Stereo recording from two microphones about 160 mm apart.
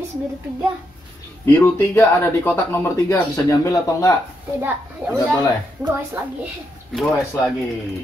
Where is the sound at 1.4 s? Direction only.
15° left (ahead or behind).